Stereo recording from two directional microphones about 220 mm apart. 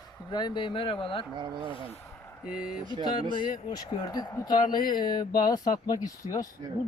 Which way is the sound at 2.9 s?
20° left (ahead or behind).